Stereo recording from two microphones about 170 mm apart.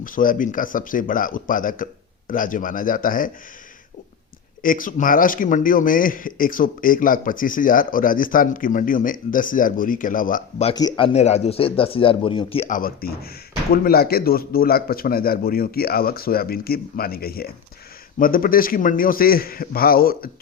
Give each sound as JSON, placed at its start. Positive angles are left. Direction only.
{"t": 0.0, "sound": "a man's voice", "side_deg": 55}
{"t": 4.6, "sound": "a man's voice", "side_deg": 55}
{"t": 10.8, "sound": "a man's voice", "side_deg": 25}
{"t": 12.6, "sound": "speech", "side_deg": 55}